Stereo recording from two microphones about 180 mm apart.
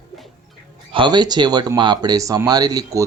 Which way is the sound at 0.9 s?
25° right (ahead or behind).